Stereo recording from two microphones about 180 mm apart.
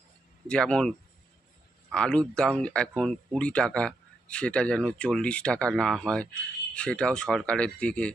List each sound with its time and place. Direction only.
0.4 s speech: 5° left (ahead or behind)